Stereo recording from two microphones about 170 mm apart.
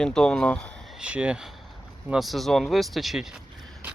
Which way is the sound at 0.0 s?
5° left (ahead or behind).